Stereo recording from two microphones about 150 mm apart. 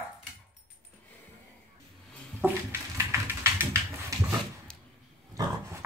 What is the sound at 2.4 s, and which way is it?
Bathtub, 15° right (ahead or behind).